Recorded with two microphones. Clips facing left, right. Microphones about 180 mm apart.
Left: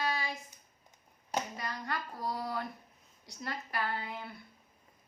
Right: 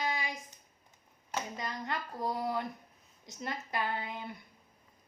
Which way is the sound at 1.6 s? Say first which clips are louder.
Right 1 dB; 20° right (ahead or behind).